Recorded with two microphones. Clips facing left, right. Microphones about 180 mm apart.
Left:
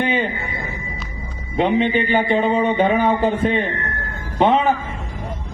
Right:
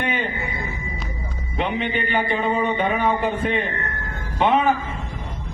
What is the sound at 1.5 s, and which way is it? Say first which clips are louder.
A man's voice: left 7 dB; 30° left (ahead or behind).